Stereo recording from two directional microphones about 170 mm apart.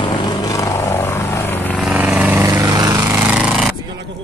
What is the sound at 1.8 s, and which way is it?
Vehicle, 10° right (ahead or behind).